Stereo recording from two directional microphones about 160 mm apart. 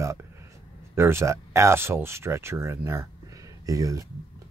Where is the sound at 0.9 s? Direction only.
15° right (ahead or behind).